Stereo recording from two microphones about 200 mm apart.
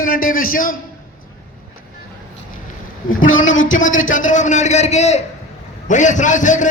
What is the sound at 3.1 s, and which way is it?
Speech, 75° left (ahead or behind).